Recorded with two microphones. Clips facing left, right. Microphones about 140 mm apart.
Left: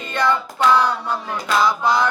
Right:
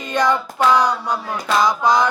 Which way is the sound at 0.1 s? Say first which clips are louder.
Right 2 dB; 15° right (ahead or behind).